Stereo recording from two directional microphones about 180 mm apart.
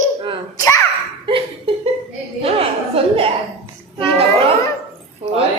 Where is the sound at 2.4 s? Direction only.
30° right (ahead or behind).